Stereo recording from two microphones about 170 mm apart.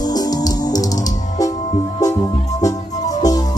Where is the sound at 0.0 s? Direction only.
25° left (ahead or behind).